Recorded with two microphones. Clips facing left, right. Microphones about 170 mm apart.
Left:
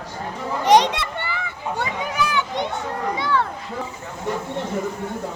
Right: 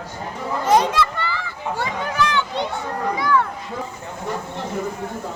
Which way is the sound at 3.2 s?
30° left (ahead or behind).